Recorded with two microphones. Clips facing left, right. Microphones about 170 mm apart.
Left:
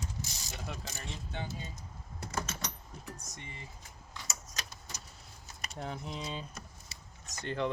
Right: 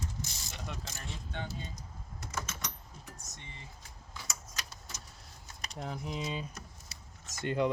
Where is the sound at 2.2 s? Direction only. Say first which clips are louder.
Left 3 dB; 30° left (ahead or behind).